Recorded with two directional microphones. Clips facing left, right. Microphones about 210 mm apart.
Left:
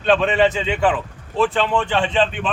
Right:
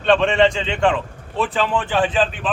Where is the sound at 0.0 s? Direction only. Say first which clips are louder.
Right 1 dB; centre (ahead or behind).